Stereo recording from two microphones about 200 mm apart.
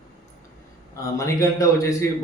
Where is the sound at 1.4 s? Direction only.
15° left (ahead or behind).